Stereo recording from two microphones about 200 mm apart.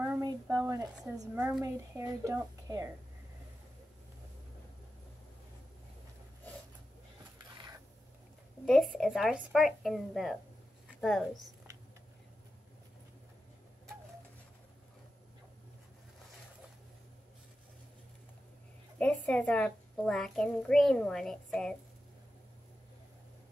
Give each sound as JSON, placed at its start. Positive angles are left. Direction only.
{"t": 0.0, "sound": "speech", "side_deg": -10}
{"t": 8.6, "sound": "a child's voice", "side_deg": 0}
{"t": 10.9, "sound": "a sound", "side_deg": 0}
{"t": 18.9, "sound": "a child's voice", "side_deg": 5}